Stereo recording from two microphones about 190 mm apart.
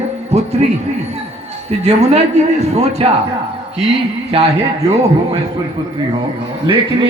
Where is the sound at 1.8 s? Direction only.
35° right (ahead or behind).